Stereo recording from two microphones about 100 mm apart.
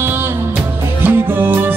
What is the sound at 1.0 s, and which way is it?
Music, 20° right (ahead or behind).